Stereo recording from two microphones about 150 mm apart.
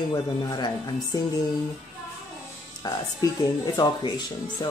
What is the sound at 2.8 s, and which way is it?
Speech, 25° left (ahead or behind).